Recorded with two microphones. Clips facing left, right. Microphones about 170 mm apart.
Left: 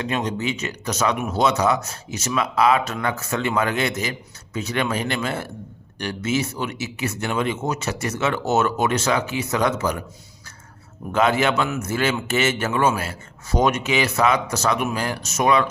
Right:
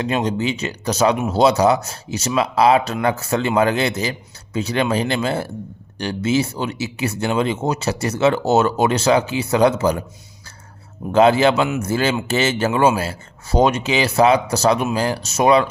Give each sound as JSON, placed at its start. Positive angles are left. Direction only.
{"t": 0.0, "sound": "speech", "side_deg": -30}
{"t": 11.1, "sound": "speech", "side_deg": -30}